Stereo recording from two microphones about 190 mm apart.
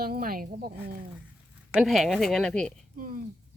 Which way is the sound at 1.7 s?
Centre (ahead or behind).